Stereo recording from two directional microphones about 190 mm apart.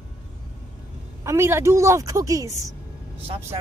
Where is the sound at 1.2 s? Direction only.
15° right (ahead or behind).